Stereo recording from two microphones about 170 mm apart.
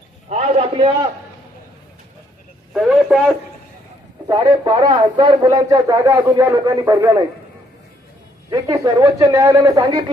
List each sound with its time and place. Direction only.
0.3 s a man's voice: 40° right (ahead or behind)
2.7 s speech: 5° right (ahead or behind)
4.3 s speech: 25° right (ahead or behind)
8.4 s speech: 20° right (ahead or behind)